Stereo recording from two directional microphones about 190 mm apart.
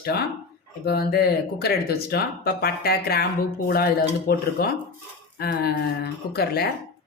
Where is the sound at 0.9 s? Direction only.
55° left (ahead or behind).